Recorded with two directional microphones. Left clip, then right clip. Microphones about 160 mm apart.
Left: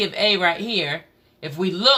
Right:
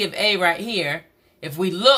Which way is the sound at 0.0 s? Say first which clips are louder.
Even; 20° right (ahead or behind).